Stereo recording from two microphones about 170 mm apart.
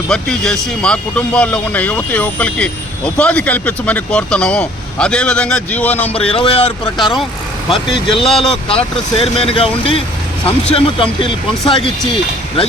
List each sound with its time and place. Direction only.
0.1 s speech: 5° left (ahead or behind)
6.3 s speech: 35° left (ahead or behind)
8.2 s speech: centre (ahead or behind)
9.1 s speech: 35° left (ahead or behind)